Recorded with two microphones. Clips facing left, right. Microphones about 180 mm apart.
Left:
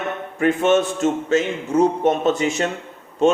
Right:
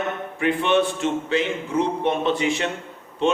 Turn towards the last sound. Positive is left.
turn(degrees=45)  # may be behind; listen again after turning